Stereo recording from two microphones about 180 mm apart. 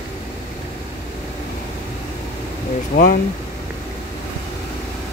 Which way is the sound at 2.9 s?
50° left (ahead or behind).